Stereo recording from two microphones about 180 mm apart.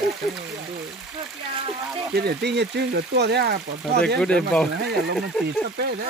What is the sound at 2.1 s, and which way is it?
Speech, 65° right (ahead or behind).